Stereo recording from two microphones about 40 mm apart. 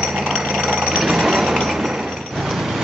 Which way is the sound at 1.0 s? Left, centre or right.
Centre.